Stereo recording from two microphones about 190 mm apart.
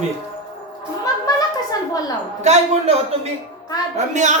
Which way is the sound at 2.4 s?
35° right (ahead or behind).